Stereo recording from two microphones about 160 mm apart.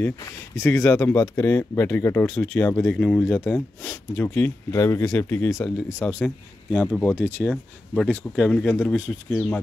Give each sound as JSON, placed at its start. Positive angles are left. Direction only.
{"t": 0.0, "sound": "speech", "side_deg": 15}